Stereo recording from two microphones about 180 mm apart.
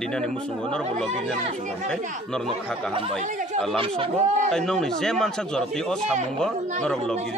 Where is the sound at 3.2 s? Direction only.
45° right (ahead or behind).